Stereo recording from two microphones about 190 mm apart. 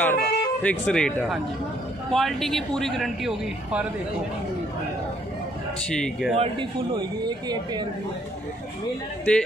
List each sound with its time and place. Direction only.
0.0 s speech: 10° left (ahead or behind)
5.8 s speech: 5° left (ahead or behind)
6.3 s speech: 30° right (ahead or behind)